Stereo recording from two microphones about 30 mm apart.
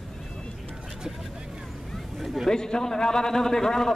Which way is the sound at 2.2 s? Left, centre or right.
Centre.